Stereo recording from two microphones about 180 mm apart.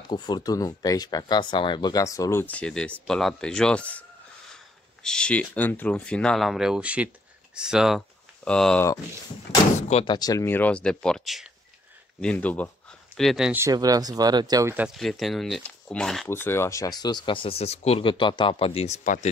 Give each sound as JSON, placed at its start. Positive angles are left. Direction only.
{"t": 0.1, "sound": "speech", "side_deg": 25}
{"t": 5.0, "sound": "speech", "side_deg": 5}
{"t": 9.8, "sound": "speech", "side_deg": 35}
{"t": 10.1, "sound": "speech", "side_deg": 20}
{"t": 13.6, "sound": "speech", "side_deg": -20}
{"t": 15.0, "sound": "speech", "side_deg": 0}